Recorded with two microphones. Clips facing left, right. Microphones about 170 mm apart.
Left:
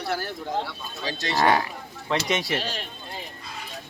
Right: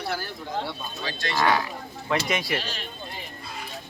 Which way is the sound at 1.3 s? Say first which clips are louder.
Left 2 dB; 40° left (ahead or behind).